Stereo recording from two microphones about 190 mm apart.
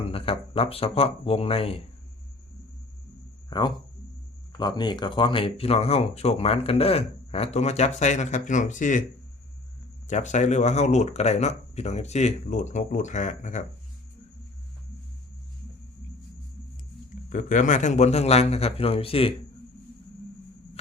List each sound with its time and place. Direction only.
0.0 s speech: 30° left (ahead or behind)
3.5 s speech: 25° left (ahead or behind); by 9.0 s 40° left (ahead or behind)
10.1 s speech: 40° left (ahead or behind)
17.2 s speech: 40° left (ahead or behind)